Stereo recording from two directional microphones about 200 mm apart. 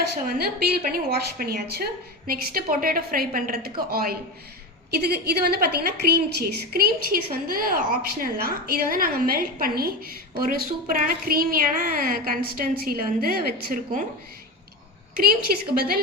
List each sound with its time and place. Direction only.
0.0 s a woman's voice: 50° right (ahead or behind)
15.1 s a woman's voice: 50° right (ahead or behind)